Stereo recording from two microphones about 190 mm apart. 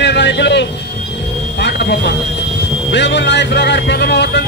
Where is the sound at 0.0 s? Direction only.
65° left (ahead or behind).